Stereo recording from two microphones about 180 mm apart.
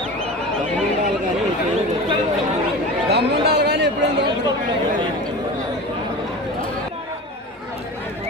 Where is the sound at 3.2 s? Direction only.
65° right (ahead or behind).